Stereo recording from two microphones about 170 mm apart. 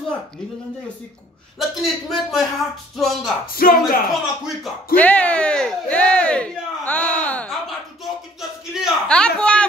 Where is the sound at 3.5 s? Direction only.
60° left (ahead or behind).